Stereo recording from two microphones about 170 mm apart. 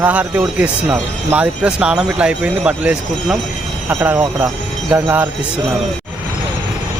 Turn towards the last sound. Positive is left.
turn(degrees=-10)  # may be behind; listen again after turning